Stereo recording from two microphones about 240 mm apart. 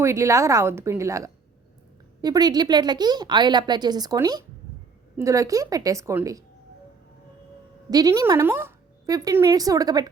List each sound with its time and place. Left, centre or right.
0.0 s a woman's voice: centre
7.9 s a woman's voice: centre